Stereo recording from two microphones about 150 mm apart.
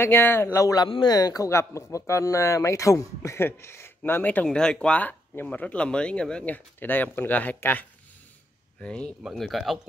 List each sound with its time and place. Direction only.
0.0 s speech: 15° left (ahead or behind)
8.8 s speech: 5° left (ahead or behind)